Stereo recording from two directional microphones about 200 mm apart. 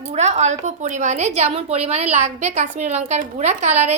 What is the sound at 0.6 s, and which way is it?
A woman's voice, 35° right (ahead or behind).